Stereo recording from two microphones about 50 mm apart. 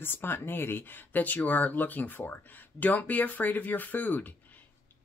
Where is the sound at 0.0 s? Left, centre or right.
Left.